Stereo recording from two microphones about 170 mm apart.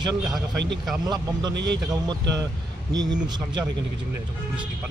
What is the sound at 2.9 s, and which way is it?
Speech, 25° right (ahead or behind).